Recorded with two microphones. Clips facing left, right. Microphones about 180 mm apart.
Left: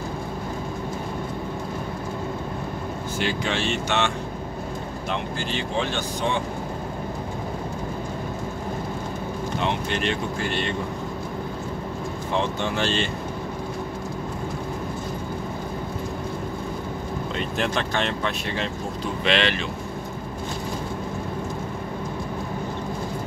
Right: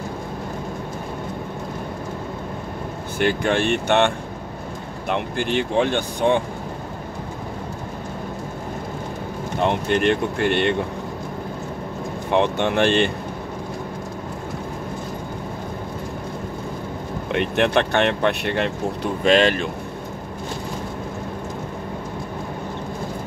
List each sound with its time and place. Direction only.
3.2 s speech: 55° right (ahead or behind)
5.1 s speech: 55° right (ahead or behind)
9.6 s speech: 50° right (ahead or behind)
12.3 s speech: 65° right (ahead or behind)
17.3 s speech: 65° right (ahead or behind)
19.2 s speech: 45° right (ahead or behind)